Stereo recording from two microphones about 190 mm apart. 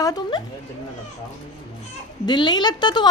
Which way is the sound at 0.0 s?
20° left (ahead or behind).